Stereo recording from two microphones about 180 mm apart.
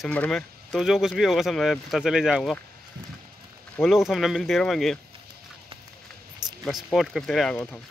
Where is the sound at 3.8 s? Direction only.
Centre (ahead or behind).